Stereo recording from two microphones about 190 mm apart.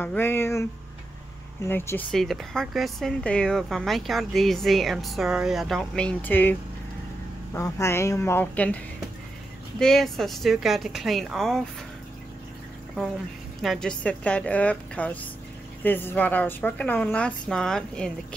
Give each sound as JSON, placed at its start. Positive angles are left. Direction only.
{"t": 0.0, "sound": "a woman's voice", "side_deg": 10}
{"t": 7.5, "sound": "a woman's voice", "side_deg": 15}
{"t": 13.6, "sound": "a woman's voice", "side_deg": 0}